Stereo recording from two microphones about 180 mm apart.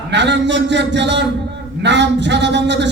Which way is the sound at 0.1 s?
75° right (ahead or behind).